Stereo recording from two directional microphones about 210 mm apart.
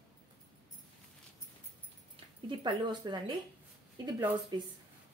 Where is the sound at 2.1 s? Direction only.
20° right (ahead or behind).